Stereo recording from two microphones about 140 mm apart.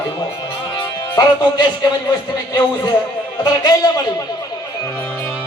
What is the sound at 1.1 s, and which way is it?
Speech, 30° left (ahead or behind).